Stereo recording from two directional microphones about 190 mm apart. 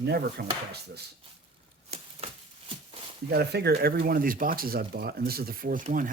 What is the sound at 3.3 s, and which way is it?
Speech, 55° right (ahead or behind).